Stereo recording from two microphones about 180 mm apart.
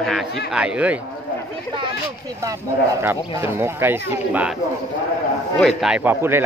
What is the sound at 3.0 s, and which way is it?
A man's voice, 15° right (ahead or behind).